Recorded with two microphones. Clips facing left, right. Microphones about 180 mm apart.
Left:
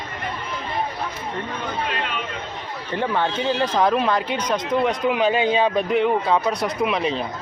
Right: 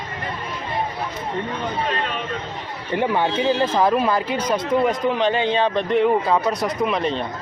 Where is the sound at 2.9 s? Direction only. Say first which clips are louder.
Right 3 dB; 15° right (ahead or behind).